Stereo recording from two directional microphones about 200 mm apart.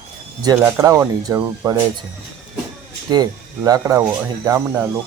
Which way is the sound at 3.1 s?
20° right (ahead or behind).